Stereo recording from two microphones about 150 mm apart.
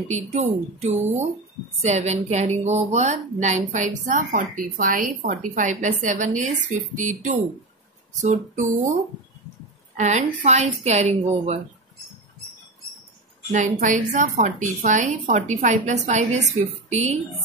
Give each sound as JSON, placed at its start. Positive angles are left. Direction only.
{"t": 0.1, "sound": "a woman's voice", "side_deg": -50}
{"t": 9.9, "sound": "a woman's voice", "side_deg": -50}
{"t": 13.7, "sound": "a woman's voice", "side_deg": -55}